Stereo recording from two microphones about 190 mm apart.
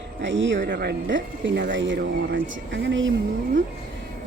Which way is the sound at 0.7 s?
60° right (ahead or behind).